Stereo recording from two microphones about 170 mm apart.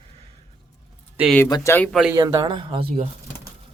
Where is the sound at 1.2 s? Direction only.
10° right (ahead or behind).